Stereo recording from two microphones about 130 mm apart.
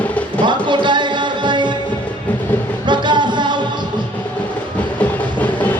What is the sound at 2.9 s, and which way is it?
Music, 35° right (ahead or behind).